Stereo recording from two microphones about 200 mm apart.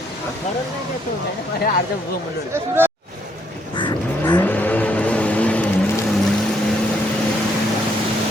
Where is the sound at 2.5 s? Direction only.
10° right (ahead or behind).